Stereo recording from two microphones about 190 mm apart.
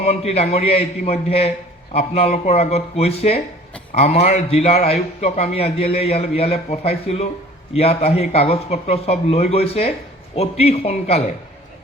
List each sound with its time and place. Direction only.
0.0 s a man's voice: 35° left (ahead or behind)